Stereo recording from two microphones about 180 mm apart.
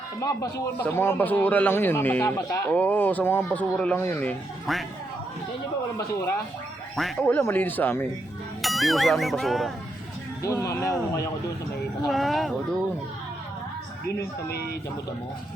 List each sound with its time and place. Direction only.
0.6 s a man's voice: 15° left (ahead or behind)
6.9 s a man's voice: centre (ahead or behind)
8.6 s speech: centre (ahead or behind)
10.4 s a man's voice: 15° left (ahead or behind)
12.0 s speech: centre (ahead or behind)
14.5 s speech: 60° left (ahead or behind)